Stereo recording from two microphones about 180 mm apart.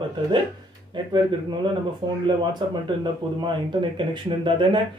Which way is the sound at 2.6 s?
25° right (ahead or behind).